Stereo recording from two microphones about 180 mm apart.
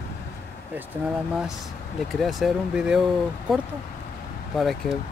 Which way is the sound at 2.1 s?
Centre (ahead or behind).